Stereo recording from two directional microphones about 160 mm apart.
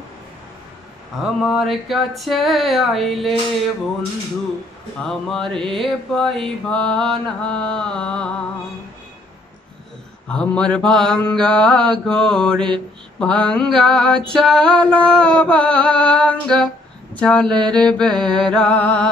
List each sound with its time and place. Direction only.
1.1 s mantra: centre (ahead or behind)
5.0 s mantra: 5° left (ahead or behind)
10.2 s mantra: 5° left (ahead or behind)